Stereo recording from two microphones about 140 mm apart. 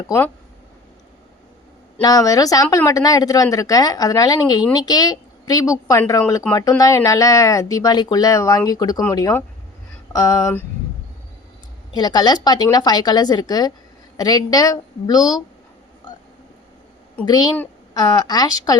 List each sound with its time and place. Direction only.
2.0 s a woman's voice: 25° left (ahead or behind)
10.1 s a sound: 25° left (ahead or behind)
11.9 s a woman's voice: 30° left (ahead or behind)
17.2 s a woman's voice: 30° left (ahead or behind)